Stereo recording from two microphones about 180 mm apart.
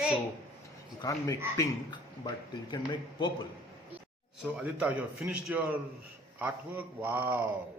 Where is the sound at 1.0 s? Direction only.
20° left (ahead or behind).